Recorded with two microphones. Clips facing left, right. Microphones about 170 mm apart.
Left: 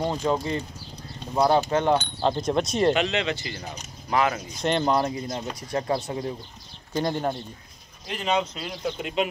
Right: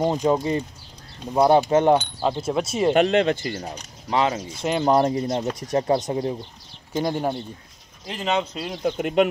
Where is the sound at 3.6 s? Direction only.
30° right (ahead or behind).